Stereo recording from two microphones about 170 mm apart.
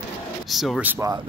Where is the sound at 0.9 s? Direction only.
20° right (ahead or behind).